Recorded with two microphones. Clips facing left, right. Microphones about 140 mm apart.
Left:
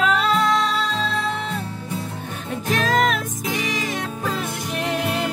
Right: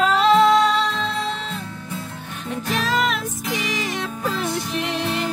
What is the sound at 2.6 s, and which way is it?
Music, 45° left (ahead or behind).